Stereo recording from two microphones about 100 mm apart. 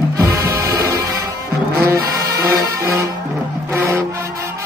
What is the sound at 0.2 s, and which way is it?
Music, 30° right (ahead or behind).